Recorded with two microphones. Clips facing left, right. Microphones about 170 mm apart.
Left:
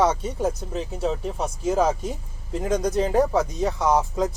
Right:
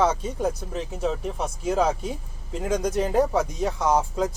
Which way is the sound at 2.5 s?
10° left (ahead or behind).